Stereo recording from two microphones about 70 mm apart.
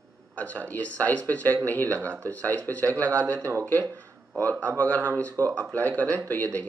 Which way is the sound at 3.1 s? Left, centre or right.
Right.